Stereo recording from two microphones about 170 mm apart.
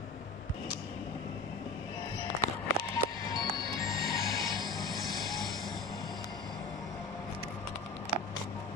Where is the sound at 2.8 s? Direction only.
60° right (ahead or behind).